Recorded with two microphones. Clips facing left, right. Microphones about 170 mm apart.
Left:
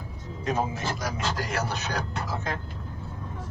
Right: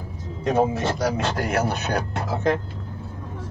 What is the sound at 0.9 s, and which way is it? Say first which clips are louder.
Speech: right 7 dB; 65° right (ahead or behind).